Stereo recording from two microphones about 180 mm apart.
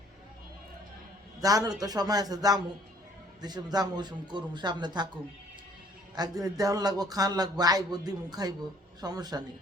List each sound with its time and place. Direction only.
1.4 s speech: 20° right (ahead or behind)
6.1 s speech: 20° right (ahead or behind)